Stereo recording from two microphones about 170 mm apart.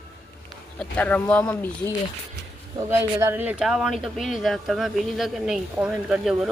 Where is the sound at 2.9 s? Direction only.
15° right (ahead or behind).